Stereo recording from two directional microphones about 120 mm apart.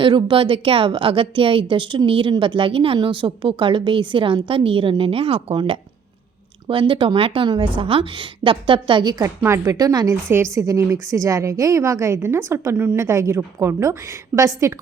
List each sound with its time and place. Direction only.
0.0 s a woman's voice: 40° right (ahead or behind)
9.2 s a woman's voice: 25° right (ahead or behind)